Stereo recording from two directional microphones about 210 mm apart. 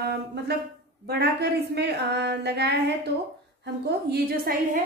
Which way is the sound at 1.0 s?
50° right (ahead or behind).